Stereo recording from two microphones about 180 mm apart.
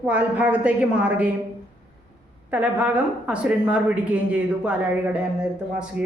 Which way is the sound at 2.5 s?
5° right (ahead or behind).